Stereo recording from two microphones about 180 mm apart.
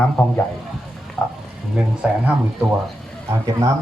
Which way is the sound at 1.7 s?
5° right (ahead or behind).